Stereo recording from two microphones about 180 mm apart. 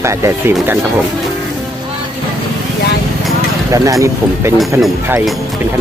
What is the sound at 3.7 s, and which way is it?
Speech, 20° right (ahead or behind).